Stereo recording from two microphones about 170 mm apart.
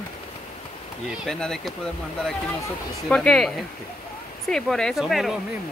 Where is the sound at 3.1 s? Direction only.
5° left (ahead or behind).